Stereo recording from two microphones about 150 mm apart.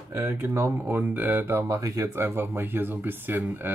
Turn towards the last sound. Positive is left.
turn(degrees=-15)  # may be behind; listen again after turning